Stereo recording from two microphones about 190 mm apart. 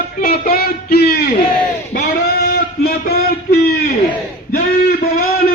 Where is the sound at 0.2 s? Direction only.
50° left (ahead or behind).